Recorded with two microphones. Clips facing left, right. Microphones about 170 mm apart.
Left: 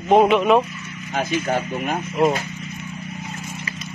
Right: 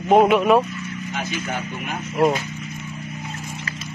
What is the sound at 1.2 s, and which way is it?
Speech, 40° left (ahead or behind).